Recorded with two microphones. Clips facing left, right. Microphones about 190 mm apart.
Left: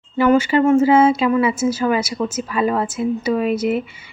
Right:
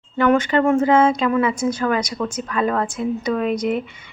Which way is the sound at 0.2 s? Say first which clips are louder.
Left 2 dB; 5° left (ahead or behind).